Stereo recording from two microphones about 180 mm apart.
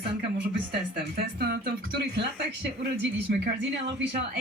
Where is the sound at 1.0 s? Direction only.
65° right (ahead or behind).